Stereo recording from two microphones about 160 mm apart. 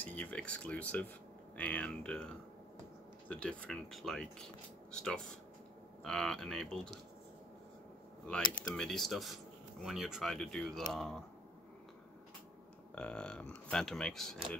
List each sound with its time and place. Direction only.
0.0 s speech: 10° left (ahead or behind)
8.7 s speech: 5° left (ahead or behind)
12.9 s speech: 5° left (ahead or behind)